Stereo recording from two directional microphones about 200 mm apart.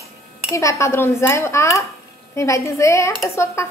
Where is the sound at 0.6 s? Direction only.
15° left (ahead or behind).